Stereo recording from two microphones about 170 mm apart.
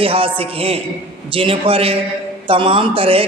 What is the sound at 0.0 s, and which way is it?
A woman's voice, 30° right (ahead or behind).